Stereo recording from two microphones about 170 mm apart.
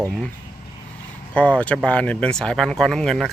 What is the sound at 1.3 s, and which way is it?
Speech, 10° left (ahead or behind).